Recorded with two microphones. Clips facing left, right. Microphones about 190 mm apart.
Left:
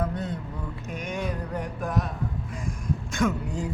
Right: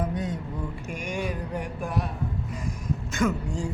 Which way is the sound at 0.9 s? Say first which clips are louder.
Left 1 dB; 10° right (ahead or behind).